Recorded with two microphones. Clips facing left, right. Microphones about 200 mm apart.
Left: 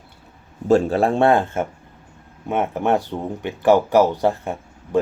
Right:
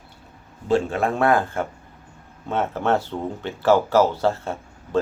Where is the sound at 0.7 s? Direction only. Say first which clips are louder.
Left 5 dB; 35° left (ahead or behind).